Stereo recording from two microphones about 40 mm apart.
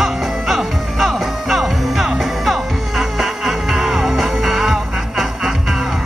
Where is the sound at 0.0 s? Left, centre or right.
Centre.